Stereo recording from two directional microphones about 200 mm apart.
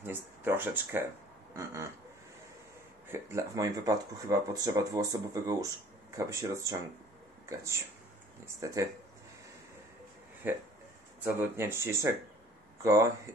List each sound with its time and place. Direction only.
0.0 s speech: 10° right (ahead or behind)
3.1 s speech: 15° right (ahead or behind)
10.4 s speech: 10° right (ahead or behind)